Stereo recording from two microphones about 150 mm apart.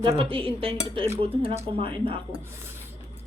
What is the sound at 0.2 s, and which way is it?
Speech, 35° right (ahead or behind).